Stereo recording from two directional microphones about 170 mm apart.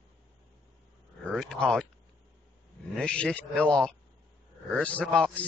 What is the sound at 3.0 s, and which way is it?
A man's voice, 5° left (ahead or behind).